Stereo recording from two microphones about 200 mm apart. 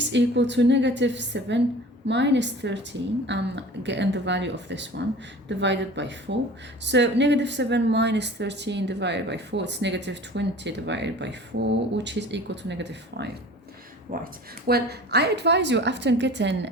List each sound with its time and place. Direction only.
0.0 s a woman's voice: 60° right (ahead or behind)
14.1 s a woman's voice: 45° right (ahead or behind); by 16.6 s 60° right (ahead or behind)